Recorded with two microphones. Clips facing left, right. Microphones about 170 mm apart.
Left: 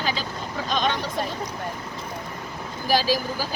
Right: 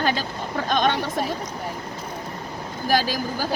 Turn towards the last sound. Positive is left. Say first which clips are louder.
# left 1 dB
turn(degrees=-50)  # may be behind; listen again after turning